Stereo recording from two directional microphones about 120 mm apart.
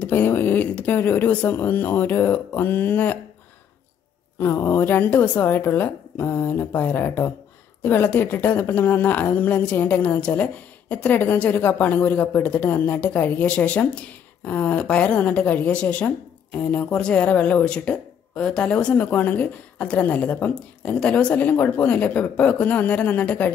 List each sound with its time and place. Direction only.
0.0 s speech: 15° left (ahead or behind)
4.4 s speech: 20° left (ahead or behind)